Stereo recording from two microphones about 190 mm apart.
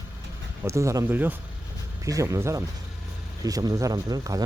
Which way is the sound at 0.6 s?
15° right (ahead or behind).